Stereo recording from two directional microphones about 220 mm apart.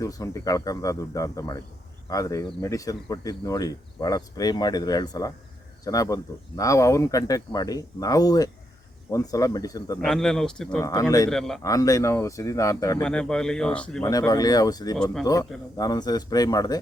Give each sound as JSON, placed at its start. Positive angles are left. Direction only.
{"t": 0.0, "sound": "speech", "side_deg": 15}
{"t": 10.0, "sound": "speech", "side_deg": 0}
{"t": 10.8, "sound": "speech", "side_deg": 15}
{"t": 11.3, "sound": "speech", "side_deg": 0}
{"t": 11.6, "sound": "speech", "side_deg": 15}
{"t": 13.0, "sound": "speech", "side_deg": 5}
{"t": 14.1, "sound": "speech", "side_deg": 15}